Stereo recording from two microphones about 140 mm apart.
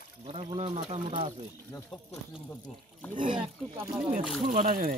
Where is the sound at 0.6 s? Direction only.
50° right (ahead or behind).